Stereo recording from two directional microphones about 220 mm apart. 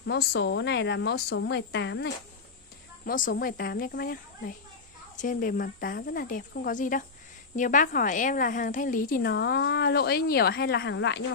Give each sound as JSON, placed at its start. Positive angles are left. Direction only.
{"t": 0.0, "sound": "a woman's voice", "side_deg": 50}
{"t": 3.1, "sound": "a woman's voice", "side_deg": 40}